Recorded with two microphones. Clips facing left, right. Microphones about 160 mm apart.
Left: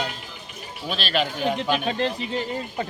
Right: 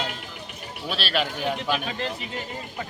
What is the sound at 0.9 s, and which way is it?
Speech, 5° right (ahead or behind).